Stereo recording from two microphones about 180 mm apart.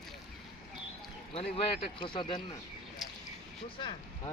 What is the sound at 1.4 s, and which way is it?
Speech, 30° left (ahead or behind).